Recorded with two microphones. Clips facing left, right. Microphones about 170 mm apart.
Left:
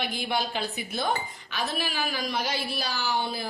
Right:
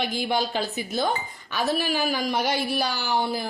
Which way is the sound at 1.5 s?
40° right (ahead or behind).